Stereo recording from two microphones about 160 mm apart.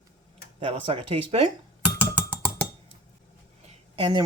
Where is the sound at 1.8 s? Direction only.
10° right (ahead or behind).